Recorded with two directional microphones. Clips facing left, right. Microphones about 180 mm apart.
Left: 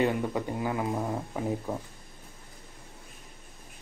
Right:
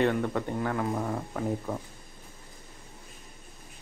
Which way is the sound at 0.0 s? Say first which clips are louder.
Right 1 dB; 10° left (ahead or behind).